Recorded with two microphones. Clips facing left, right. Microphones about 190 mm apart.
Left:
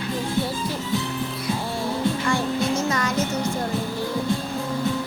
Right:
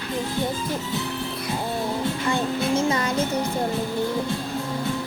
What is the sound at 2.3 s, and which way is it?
Music, 25° right (ahead or behind).